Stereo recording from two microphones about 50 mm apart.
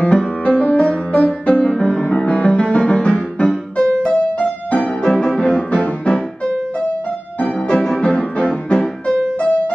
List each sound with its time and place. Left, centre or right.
0.5 s music: left
7.3 s music: left